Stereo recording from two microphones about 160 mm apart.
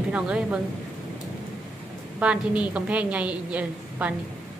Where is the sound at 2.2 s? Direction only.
5° right (ahead or behind).